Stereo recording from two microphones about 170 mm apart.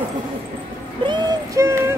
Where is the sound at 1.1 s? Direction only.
15° right (ahead or behind).